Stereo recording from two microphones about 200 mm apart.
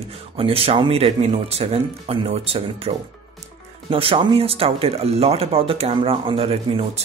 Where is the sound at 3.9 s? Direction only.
25° right (ahead or behind).